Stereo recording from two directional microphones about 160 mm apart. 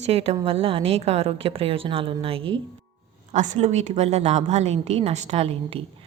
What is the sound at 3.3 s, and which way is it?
A woman's voice, 45° right (ahead or behind).